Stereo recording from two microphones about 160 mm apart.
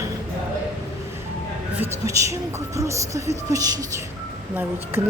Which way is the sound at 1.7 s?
20° right (ahead or behind).